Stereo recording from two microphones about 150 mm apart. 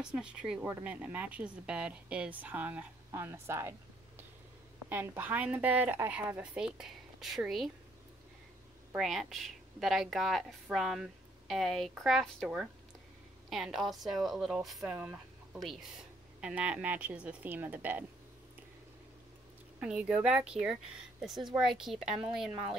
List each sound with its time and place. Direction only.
0.0 s a woman's voice: 5° right (ahead or behind)
4.8 s a woman's voice: 15° right (ahead or behind)
8.9 s a woman's voice: centre (ahead or behind)
15.0 s chicken: 10° right (ahead or behind)
16.3 s a woman's voice: 5° right (ahead or behind)
19.8 s a woman's voice: 5° right (ahead or behind)